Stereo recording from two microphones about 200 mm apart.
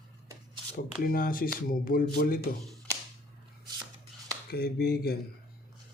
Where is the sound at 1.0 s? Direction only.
45° left (ahead or behind).